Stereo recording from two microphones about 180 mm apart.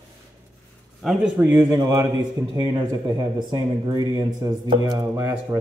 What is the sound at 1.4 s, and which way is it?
Speech, 15° right (ahead or behind).